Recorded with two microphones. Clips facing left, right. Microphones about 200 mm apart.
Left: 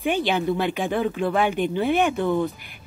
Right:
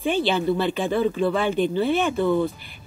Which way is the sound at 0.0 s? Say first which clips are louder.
Right 1 dB; 15° left (ahead or behind).